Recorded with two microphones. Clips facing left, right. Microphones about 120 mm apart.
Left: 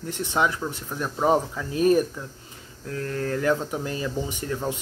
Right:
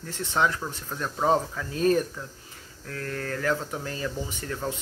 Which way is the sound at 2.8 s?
25° left (ahead or behind).